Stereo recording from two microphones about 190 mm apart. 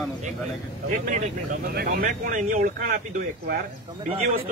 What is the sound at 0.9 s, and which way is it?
Speech, 40° right (ahead or behind).